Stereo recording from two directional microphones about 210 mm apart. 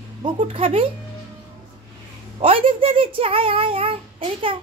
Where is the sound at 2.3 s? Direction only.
25° right (ahead or behind).